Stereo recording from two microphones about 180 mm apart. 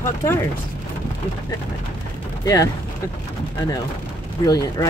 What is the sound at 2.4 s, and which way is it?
Speech, 20° left (ahead or behind).